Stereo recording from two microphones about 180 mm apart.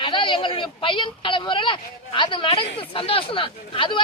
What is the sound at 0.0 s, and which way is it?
Speech, 25° left (ahead or behind).